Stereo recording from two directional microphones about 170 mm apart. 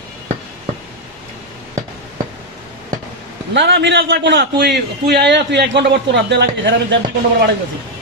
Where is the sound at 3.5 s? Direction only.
90° right.